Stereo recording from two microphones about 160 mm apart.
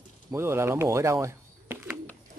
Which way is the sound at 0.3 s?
15° right (ahead or behind).